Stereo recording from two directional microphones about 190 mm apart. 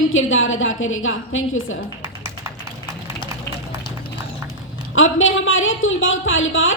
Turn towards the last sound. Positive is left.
turn(degrees=90)